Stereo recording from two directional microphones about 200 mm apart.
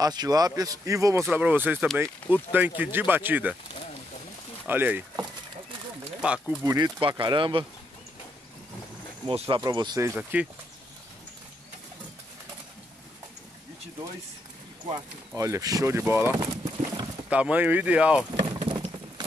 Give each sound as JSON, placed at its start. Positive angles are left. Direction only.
{"t": 0.0, "sound": "speech", "side_deg": -20}
{"t": 4.6, "sound": "speech", "side_deg": -10}
{"t": 6.2, "sound": "speech", "side_deg": -5}
{"t": 6.6, "sound": "speech", "side_deg": -15}
{"t": 9.2, "sound": "speech", "side_deg": -25}
{"t": 15.3, "sound": "speech", "side_deg": -15}
{"t": 17.3, "sound": "speech", "side_deg": -5}
{"t": 18.4, "sound": "patter", "side_deg": -25}